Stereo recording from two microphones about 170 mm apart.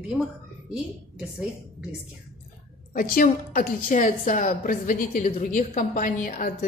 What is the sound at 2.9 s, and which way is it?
A woman's voice, 55° left (ahead or behind).